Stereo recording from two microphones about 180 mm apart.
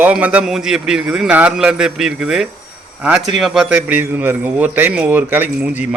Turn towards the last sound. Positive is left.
turn(degrees=-10)  # may be behind; listen again after turning